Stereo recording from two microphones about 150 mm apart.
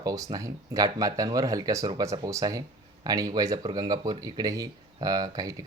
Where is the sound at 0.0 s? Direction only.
25° right (ahead or behind).